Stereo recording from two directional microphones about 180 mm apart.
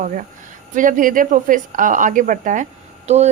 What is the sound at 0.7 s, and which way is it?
A woman's voice, 45° right (ahead or behind).